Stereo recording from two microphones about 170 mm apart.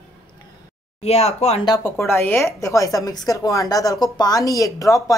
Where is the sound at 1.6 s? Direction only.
20° left (ahead or behind).